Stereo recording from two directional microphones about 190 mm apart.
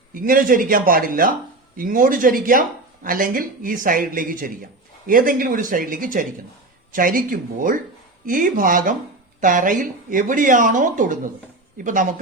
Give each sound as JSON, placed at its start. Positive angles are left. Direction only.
{"t": 0.1, "sound": "speech", "side_deg": -45}